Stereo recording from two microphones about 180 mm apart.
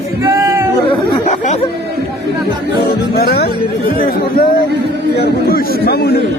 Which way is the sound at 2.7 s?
60° left (ahead or behind).